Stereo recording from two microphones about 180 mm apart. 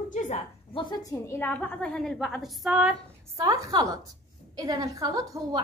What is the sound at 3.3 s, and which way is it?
A woman's voice, 20° right (ahead or behind).